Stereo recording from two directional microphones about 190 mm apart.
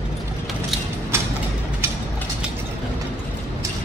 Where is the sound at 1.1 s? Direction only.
15° right (ahead or behind).